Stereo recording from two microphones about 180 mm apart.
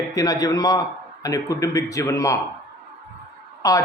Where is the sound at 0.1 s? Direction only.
20° left (ahead or behind).